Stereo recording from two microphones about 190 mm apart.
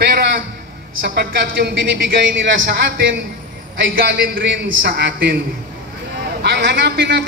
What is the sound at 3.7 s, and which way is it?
A man's voice, 65° right (ahead or behind).